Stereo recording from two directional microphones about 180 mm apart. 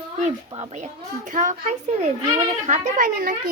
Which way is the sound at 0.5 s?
40° right (ahead or behind).